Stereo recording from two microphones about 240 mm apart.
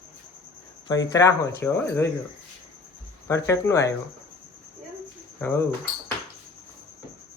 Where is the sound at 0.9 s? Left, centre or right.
Centre.